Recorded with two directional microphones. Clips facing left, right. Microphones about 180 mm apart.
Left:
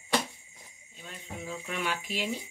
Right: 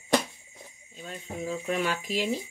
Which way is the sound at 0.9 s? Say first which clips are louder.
Right 6 dB; 40° right (ahead or behind).